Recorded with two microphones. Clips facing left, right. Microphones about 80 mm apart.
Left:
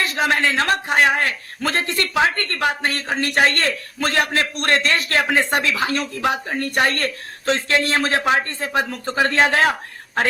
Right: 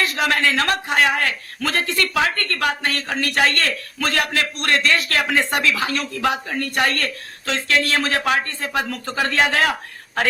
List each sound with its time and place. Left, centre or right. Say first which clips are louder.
0.0 s a man's voice: even; left